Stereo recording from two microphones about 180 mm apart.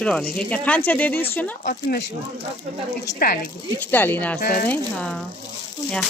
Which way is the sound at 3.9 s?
10° left (ahead or behind).